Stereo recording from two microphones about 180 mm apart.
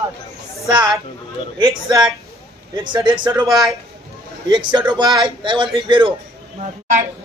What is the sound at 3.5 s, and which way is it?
Speech, centre (ahead or behind).